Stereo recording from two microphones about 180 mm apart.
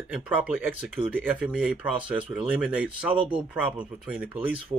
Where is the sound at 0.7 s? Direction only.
5° right (ahead or behind).